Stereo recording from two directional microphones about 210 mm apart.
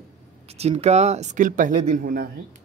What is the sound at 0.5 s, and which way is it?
Speech, 30° right (ahead or behind).